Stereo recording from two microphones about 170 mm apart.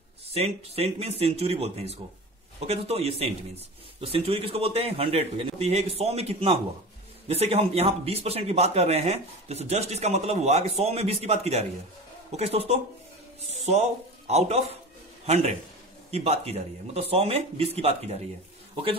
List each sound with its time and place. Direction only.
0.3 s a man's voice: 35° right (ahead or behind)